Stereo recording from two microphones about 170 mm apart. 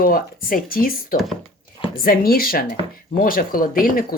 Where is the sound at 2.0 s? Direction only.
60° left (ahead or behind).